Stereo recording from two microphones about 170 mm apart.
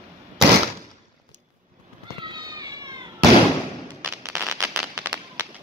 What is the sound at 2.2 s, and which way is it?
Cat, 25° right (ahead or behind).